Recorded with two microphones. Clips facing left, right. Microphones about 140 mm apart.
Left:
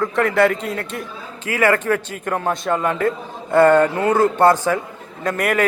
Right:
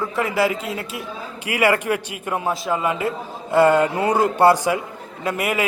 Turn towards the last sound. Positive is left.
turn(degrees=-5)  # may be behind; listen again after turning